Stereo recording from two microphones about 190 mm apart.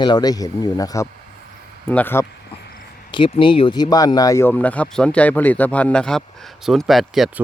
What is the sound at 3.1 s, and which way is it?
Speech, 25° left (ahead or behind).